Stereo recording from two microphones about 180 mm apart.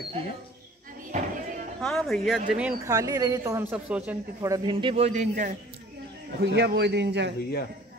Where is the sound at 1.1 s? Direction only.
40° right (ahead or behind).